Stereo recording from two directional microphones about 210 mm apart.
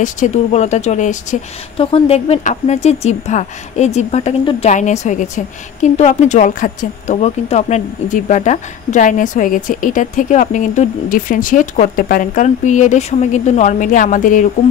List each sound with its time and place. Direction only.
0.0 s a woman's voice: 35° left (ahead or behind)